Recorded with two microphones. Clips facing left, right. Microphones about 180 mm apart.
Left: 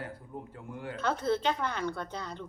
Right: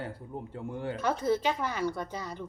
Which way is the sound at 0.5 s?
30° right (ahead or behind).